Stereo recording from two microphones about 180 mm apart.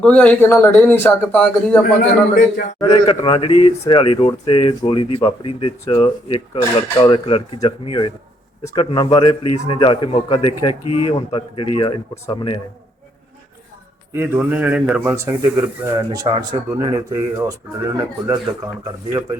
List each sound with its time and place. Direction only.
0.0 s speech: 5° left (ahead or behind)
2.9 s speech: 30° left (ahead or behind)
14.1 s speech: 10° right (ahead or behind)
16.0 s speech: 20° right (ahead or behind)